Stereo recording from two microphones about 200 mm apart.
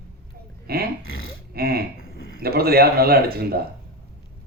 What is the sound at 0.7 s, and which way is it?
A man's voice, 50° right (ahead or behind).